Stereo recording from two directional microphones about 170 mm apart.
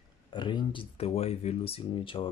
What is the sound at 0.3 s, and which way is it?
Speech, 25° left (ahead or behind).